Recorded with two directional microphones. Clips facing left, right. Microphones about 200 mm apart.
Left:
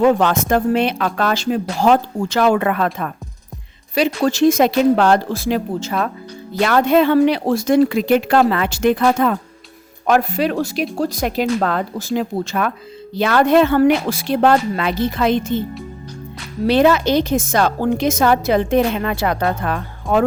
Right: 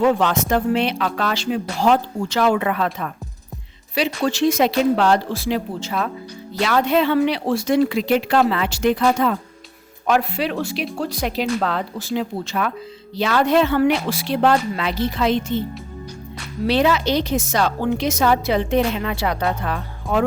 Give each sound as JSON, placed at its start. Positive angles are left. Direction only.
{"t": 0.0, "sound": "a woman's voice", "side_deg": 50}
{"t": 16.6, "sound": "a woman's voice", "side_deg": 50}